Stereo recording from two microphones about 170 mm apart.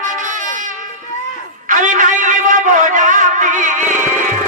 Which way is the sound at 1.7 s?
50° right (ahead or behind).